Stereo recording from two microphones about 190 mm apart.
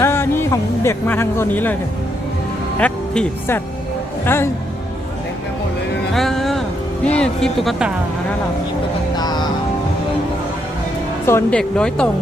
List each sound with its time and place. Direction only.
0.0 s speech: 15° left (ahead or behind)
2.7 s speech: 10° left (ahead or behind)
6.1 s music: centre (ahead or behind)
7.2 s speech: centre (ahead or behind)
9.1 s music: 20° left (ahead or behind)
11.3 s speech: 10° left (ahead or behind)